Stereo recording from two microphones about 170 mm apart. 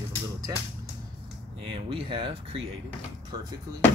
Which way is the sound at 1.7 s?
30° right (ahead or behind).